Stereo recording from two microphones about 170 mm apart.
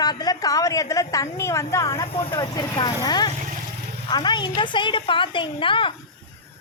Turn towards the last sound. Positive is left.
turn(degrees=30)  # may be behind; listen again after turning